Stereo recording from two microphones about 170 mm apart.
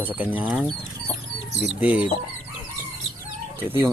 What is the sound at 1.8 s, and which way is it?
Speech, 10° right (ahead or behind).